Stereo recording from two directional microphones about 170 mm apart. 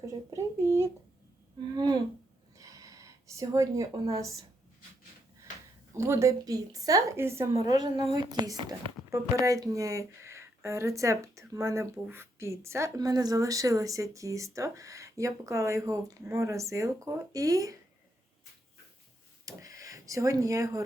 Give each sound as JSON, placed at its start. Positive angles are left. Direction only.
{"t": 0.0, "sound": "a woman's voice", "side_deg": -15}
{"t": 1.7, "sound": "humming", "side_deg": -25}
{"t": 2.6, "sound": "a sound", "side_deg": -20}
{"t": 4.1, "sound": "a woman's voice", "side_deg": -20}
{"t": 5.9, "sound": "a woman's voice", "side_deg": -15}
{"t": 19.5, "sound": "speech", "side_deg": -20}